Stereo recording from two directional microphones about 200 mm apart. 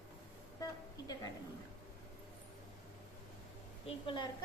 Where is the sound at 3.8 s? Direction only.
25° left (ahead or behind).